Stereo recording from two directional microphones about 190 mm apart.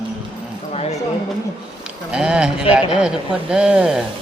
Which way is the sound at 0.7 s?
35° left (ahead or behind).